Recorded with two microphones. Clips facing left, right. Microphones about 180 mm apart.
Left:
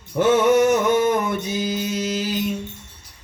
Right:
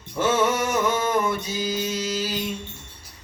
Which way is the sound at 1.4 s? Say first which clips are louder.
Left 3 dB; 55° left (ahead or behind).